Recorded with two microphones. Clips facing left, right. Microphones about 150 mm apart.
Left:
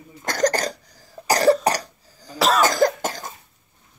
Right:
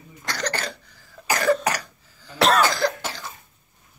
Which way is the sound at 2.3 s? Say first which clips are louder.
Right 1 dB; centre (ahead or behind).